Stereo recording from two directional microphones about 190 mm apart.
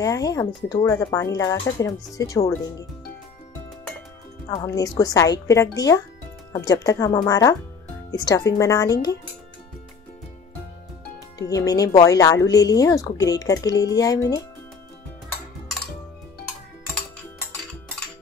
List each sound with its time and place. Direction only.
0.0 s speech: 15° left (ahead or behind)
4.5 s speech: 15° left (ahead or behind)
11.3 s speech: 20° left (ahead or behind)